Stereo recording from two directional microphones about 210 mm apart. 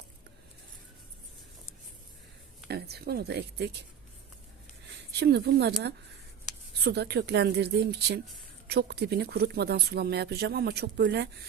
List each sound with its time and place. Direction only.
2.6 s speech: 50° right (ahead or behind)
5.2 s speech: 50° right (ahead or behind)
6.8 s speech: 50° right (ahead or behind)